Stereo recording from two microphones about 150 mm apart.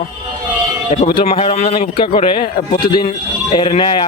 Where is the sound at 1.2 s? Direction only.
45° left (ahead or behind).